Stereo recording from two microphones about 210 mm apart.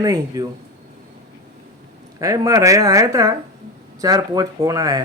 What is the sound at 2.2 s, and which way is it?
A man's voice, 15° right (ahead or behind).